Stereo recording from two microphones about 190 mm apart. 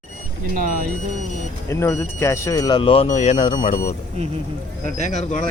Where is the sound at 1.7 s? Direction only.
15° left (ahead or behind); by 3.9 s 40° left (ahead or behind).